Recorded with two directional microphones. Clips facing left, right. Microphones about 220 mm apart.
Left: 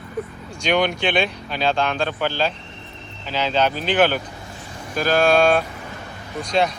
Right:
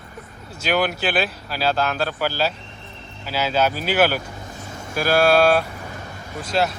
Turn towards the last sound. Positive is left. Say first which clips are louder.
# left 2 dB
turn(degrees=-5)  # may be behind; listen again after turning